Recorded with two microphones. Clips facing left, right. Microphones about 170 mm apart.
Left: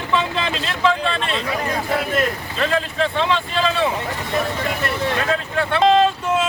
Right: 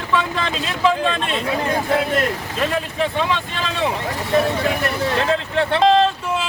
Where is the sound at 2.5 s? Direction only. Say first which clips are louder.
Left 1 dB; 10° right (ahead or behind).